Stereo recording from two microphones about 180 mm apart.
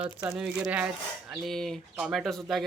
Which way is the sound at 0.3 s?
5° right (ahead or behind).